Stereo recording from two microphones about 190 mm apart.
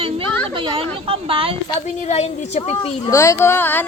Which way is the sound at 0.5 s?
30° right (ahead or behind).